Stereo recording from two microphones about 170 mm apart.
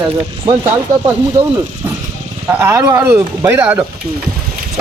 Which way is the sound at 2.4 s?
15° right (ahead or behind).